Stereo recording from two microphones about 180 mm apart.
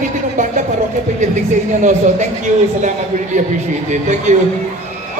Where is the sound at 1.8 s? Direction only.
45° right (ahead or behind).